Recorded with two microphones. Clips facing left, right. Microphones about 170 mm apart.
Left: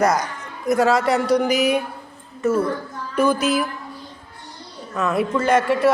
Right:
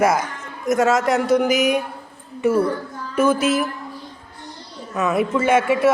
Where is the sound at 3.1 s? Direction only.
5° right (ahead or behind).